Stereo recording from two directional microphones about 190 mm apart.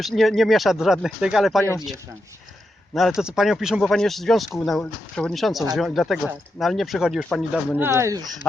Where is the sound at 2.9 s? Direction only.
Centre (ahead or behind).